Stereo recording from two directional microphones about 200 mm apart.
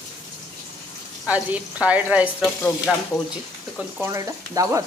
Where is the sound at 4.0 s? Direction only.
15° right (ahead or behind).